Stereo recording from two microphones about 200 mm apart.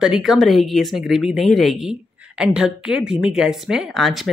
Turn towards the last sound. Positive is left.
turn(degrees=0)  # may be behind; listen again after turning